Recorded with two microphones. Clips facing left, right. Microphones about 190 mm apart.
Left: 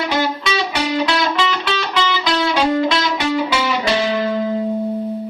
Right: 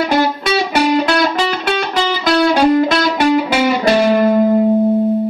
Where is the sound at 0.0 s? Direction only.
50° right (ahead or behind).